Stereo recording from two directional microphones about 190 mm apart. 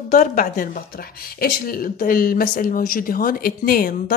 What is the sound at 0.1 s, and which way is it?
Speech, 40° left (ahead or behind).